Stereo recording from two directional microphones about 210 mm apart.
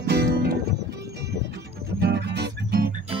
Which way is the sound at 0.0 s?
50° right (ahead or behind).